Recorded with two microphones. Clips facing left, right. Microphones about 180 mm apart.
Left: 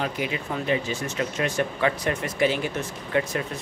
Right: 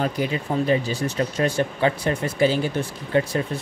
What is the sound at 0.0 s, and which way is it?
Speech, 35° right (ahead or behind).